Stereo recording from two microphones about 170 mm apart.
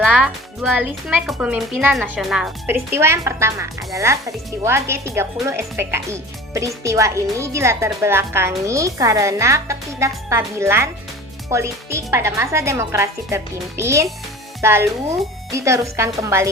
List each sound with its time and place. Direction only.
0.0 s a woman's voice: 5° right (ahead or behind)